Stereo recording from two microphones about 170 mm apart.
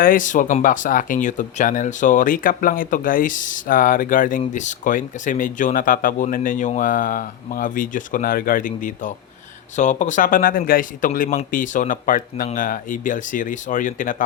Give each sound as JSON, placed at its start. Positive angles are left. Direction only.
{"t": 0.0, "sound": "speech", "side_deg": 50}